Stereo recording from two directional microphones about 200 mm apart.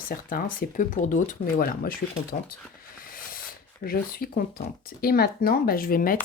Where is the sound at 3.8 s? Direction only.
45° left (ahead or behind).